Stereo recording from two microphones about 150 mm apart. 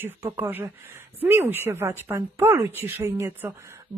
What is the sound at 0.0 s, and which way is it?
Speech, 15° right (ahead or behind).